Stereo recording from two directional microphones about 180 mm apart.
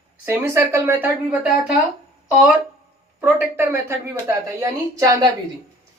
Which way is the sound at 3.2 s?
10° right (ahead or behind).